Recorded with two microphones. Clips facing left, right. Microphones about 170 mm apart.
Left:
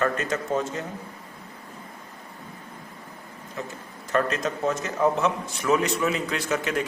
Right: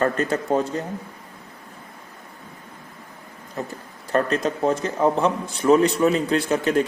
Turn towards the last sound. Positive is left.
turn(degrees=-35)  # may be behind; listen again after turning